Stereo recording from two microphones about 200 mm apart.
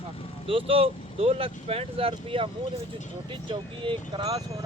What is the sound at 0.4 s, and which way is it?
Speech, 25° right (ahead or behind).